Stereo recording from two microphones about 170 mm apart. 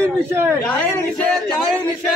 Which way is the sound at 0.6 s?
5° left (ahead or behind).